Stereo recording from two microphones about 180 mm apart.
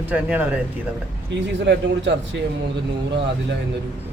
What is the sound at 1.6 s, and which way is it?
Speech, 75° right (ahead or behind).